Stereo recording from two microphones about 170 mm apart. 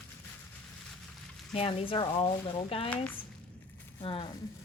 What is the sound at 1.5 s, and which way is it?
Speech, 35° left (ahead or behind).